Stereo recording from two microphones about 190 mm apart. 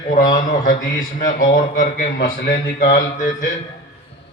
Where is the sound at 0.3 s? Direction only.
45° left (ahead or behind).